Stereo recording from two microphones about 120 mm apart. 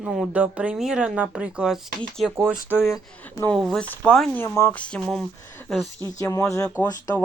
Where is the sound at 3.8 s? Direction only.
10° left (ahead or behind).